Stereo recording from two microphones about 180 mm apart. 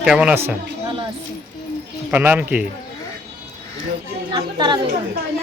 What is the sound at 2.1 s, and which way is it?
Speech, 10° right (ahead or behind).